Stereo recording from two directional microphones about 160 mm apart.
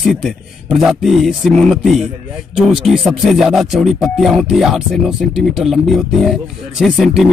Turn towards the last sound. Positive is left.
turn(degrees=-5)  # may be behind; listen again after turning